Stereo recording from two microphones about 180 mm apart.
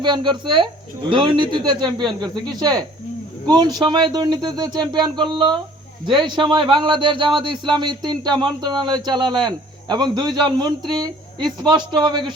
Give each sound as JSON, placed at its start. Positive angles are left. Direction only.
{"t": 0.0, "sound": "speech", "side_deg": -25}